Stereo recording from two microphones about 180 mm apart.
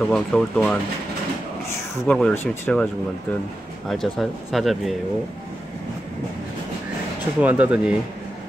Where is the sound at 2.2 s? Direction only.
5° left (ahead or behind).